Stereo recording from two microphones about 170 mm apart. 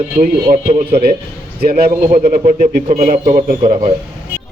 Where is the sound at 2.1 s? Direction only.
45° right (ahead or behind).